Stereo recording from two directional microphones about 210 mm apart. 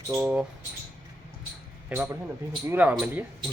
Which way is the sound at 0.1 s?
5° right (ahead or behind).